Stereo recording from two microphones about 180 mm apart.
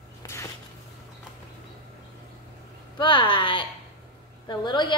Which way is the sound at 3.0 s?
25° left (ahead or behind).